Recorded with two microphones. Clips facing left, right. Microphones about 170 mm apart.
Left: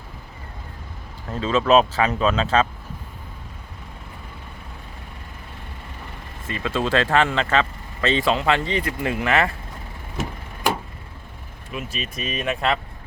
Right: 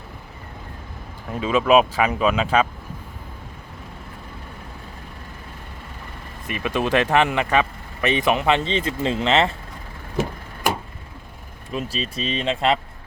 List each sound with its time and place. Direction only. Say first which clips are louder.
1.3 s speech: right 1 dB; 10° right (ahead or behind)
6.5 s speech: right 1 dB; 15° right (ahead or behind)
11.7 s speech: right 4 dB; 30° right (ahead or behind)